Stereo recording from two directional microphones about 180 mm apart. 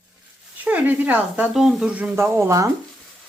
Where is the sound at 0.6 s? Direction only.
10° right (ahead or behind).